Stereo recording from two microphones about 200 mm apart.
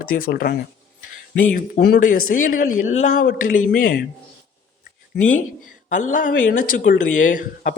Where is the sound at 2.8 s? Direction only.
40° left (ahead or behind).